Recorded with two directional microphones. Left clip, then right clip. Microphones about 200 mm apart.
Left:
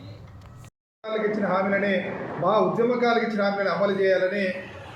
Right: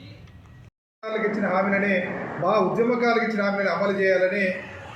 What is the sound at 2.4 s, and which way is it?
A man's voice, centre (ahead or behind).